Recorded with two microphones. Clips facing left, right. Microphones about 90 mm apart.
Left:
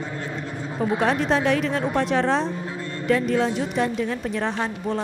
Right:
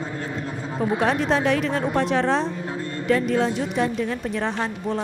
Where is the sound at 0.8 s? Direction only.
Centre (ahead or behind).